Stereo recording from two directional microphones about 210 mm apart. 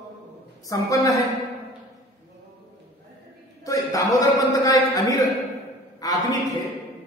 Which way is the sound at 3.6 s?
15° left (ahead or behind).